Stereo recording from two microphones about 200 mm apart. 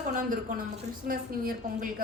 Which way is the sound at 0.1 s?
40° right (ahead or behind).